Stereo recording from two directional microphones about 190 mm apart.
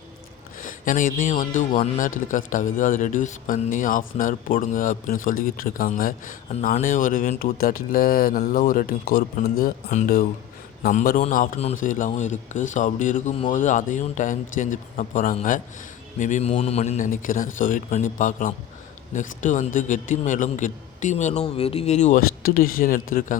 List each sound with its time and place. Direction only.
0.6 s speech: 45° left (ahead or behind)